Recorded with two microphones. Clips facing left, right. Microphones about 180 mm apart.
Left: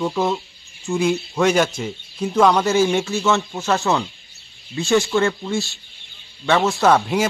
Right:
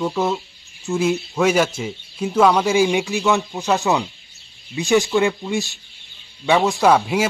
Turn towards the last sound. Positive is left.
turn(degrees=-10)  # may be behind; listen again after turning